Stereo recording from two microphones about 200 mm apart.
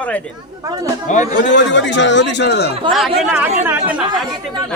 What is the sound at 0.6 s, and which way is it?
Speech, 15° right (ahead or behind).